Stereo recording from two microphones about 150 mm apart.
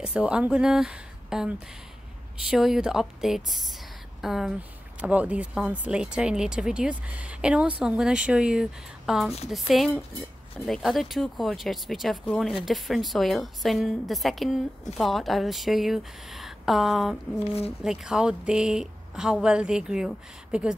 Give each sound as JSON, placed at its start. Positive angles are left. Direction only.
{"t": 0.0, "sound": "a woman's voice", "side_deg": -10}
{"t": 17.5, "sound": "speech", "side_deg": 40}
{"t": 17.8, "sound": "a woman's voice", "side_deg": -5}